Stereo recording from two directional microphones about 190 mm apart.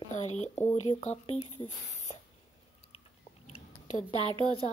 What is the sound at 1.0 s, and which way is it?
A woman's voice, 35° left (ahead or behind).